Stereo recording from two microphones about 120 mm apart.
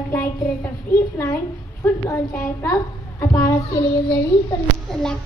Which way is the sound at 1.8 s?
20° left (ahead or behind).